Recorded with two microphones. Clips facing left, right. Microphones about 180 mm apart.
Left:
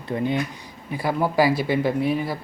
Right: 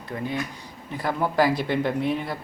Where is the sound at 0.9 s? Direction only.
10° left (ahead or behind).